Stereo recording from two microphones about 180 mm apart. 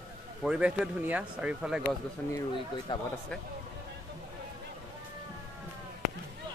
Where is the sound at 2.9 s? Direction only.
25° left (ahead or behind).